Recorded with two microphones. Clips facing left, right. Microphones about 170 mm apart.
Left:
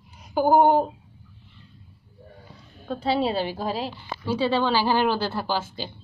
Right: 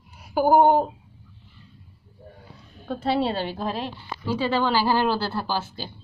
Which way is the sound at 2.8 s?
5° right (ahead or behind).